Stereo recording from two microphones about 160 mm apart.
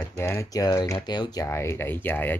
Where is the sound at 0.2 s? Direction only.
15° left (ahead or behind).